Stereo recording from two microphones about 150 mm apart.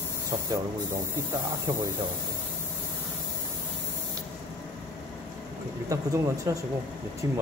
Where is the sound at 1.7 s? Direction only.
20° right (ahead or behind).